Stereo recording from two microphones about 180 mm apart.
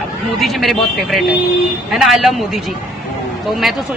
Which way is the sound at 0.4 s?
Centre (ahead or behind).